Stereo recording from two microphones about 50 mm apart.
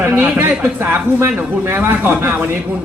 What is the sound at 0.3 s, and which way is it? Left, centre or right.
A man's voice, right.